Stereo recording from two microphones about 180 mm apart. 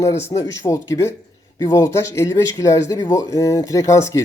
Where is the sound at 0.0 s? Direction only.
15° left (ahead or behind).